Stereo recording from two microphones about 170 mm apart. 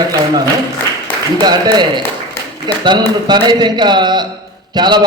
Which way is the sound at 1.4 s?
25° right (ahead or behind).